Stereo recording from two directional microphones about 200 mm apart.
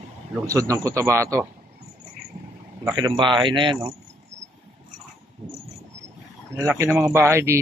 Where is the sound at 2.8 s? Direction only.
20° right (ahead or behind).